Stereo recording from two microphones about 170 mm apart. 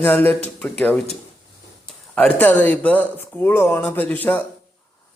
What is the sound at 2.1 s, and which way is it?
Speech, 10° left (ahead or behind).